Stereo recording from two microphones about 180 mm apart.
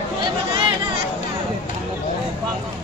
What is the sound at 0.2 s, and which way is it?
Chatter, 30° right (ahead or behind).